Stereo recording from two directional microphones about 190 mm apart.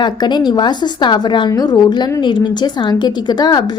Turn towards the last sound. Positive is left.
turn(degrees=20)  # may be behind; listen again after turning